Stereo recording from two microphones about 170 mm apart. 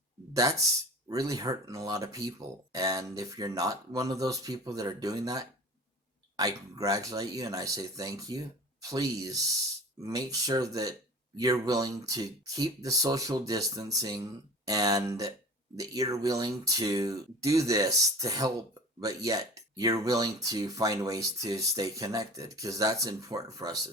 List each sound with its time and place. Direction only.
0.3 s speech: 20° right (ahead or behind)